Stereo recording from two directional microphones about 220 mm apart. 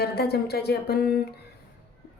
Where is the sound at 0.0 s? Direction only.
45° left (ahead or behind).